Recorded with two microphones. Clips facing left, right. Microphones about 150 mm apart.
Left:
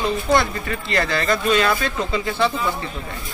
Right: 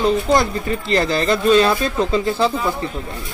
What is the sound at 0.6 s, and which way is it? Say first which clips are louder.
Speech: right 5 dB; 30° right (ahead or behind).